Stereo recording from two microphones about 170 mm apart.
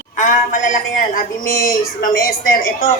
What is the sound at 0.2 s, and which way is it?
Speech, 50° left (ahead or behind).